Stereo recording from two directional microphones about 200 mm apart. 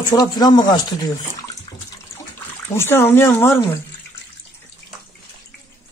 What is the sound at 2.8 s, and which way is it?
Speech, 10° left (ahead or behind).